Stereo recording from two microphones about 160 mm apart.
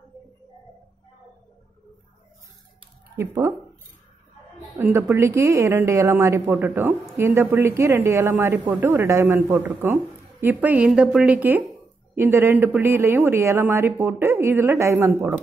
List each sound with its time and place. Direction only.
3.2 s a woman's voice: 20° right (ahead or behind)
4.7 s a woman's voice: 15° right (ahead or behind)